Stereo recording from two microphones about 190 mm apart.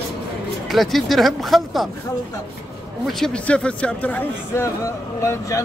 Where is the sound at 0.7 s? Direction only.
Centre (ahead or behind).